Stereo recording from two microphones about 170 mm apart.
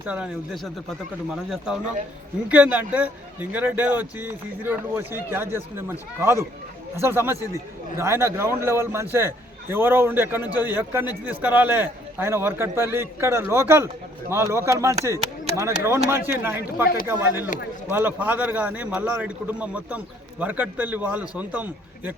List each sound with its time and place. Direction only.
0.0 s a man's voice: 10° right (ahead or behind)